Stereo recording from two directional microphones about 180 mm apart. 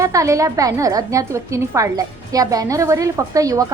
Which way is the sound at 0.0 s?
20° right (ahead or behind).